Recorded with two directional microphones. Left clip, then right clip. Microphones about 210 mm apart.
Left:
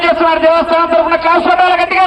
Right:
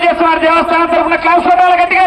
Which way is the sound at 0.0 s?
5° right (ahead or behind).